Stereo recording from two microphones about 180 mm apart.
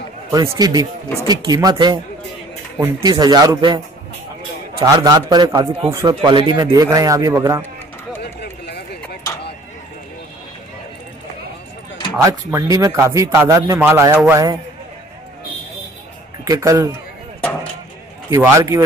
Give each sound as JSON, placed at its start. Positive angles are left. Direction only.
{"t": 0.3, "sound": "speech", "side_deg": -20}
{"t": 8.2, "sound": "a sound", "side_deg": 65}
{"t": 12.2, "sound": "a man's voice", "side_deg": -15}
{"t": 16.4, "sound": "speech", "side_deg": -20}
{"t": 18.3, "sound": "a man's voice", "side_deg": -15}